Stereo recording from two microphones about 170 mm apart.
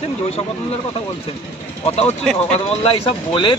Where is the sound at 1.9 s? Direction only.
40° left (ahead or behind).